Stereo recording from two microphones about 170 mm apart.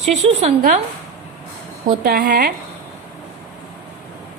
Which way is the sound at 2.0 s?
55° right (ahead or behind).